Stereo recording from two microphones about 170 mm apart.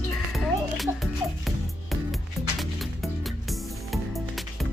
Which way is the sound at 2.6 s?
Centre (ahead or behind).